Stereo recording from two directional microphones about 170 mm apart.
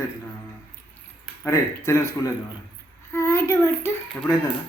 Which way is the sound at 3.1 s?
15° left (ahead or behind).